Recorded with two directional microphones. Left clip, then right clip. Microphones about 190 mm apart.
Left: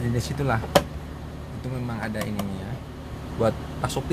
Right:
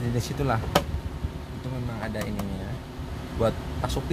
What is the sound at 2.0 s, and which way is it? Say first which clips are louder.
Speech: left 1 dB; centre (ahead or behind).